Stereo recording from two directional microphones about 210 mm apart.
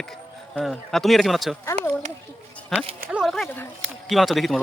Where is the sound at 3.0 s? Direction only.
5° right (ahead or behind).